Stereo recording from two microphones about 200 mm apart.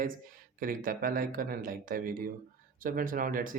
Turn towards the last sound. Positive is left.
turn(degrees=-45)  # may be behind; listen again after turning